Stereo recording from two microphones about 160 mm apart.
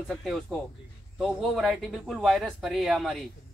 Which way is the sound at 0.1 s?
5° left (ahead or behind).